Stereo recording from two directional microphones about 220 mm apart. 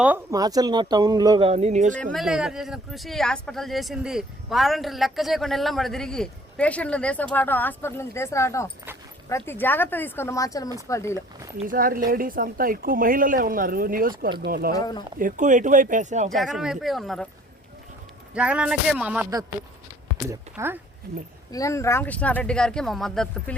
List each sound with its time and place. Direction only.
0.0 s speech: 10° right (ahead or behind); by 2.0 s 35° right (ahead or behind)
2.1 s speech: centre (ahead or behind); by 11.2 s 15° left (ahead or behind)
11.6 s speech: 40° right (ahead or behind)
14.8 s speech: 20° left (ahead or behind)
15.2 s speech: 35° right (ahead or behind)
16.3 s speech: centre (ahead or behind)
18.3 s speech: 5° right (ahead or behind)
20.3 s speech: 10° right (ahead or behind)
21.5 s speech: 15° left (ahead or behind)